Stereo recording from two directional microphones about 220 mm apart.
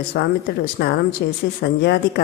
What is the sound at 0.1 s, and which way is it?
A woman's voice, 50° left (ahead or behind).